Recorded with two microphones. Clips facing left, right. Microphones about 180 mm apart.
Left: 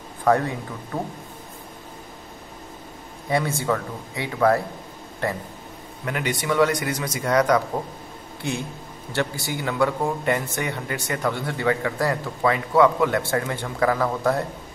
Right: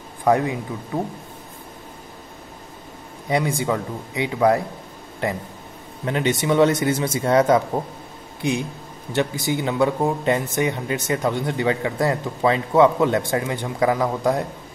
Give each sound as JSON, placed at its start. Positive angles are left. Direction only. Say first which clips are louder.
{"t": 0.2, "sound": "speech", "louder": "right 2 dB", "side_deg": -15}
{"t": 3.3, "sound": "speech", "louder": "right 2 dB", "side_deg": -15}